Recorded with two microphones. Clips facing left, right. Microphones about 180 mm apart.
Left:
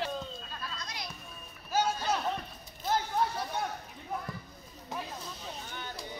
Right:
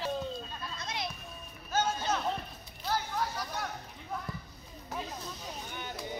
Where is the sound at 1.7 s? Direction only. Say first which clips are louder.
Left 1 dB; 10° left (ahead or behind).